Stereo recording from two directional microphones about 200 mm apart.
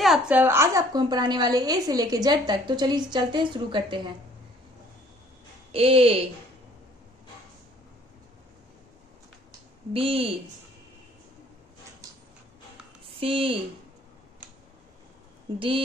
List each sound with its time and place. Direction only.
0.0 s a woman's voice: 5° right (ahead or behind); by 4.0 s 25° right (ahead or behind)
5.7 s a woman's voice: 30° right (ahead or behind)
9.9 s a woman's voice: 30° right (ahead or behind)
13.2 s a woman's voice: 25° right (ahead or behind)